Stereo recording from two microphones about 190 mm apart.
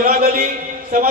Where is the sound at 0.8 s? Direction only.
50° right (ahead or behind).